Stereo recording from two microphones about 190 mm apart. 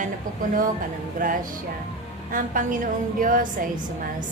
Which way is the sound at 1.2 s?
45° right (ahead or behind).